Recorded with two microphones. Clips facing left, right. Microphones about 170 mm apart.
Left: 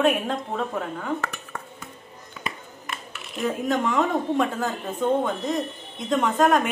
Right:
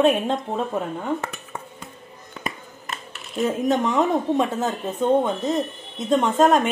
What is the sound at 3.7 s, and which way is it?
Speech, 20° right (ahead or behind).